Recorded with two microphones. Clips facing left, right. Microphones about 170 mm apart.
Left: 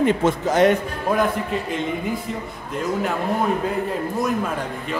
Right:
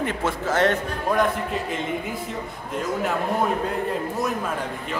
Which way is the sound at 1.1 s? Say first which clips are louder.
Left 2 dB; centre (ahead or behind).